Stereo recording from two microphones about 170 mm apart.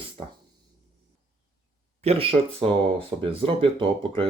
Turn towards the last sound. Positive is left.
turn(degrees=-30)  # may be behind; listen again after turning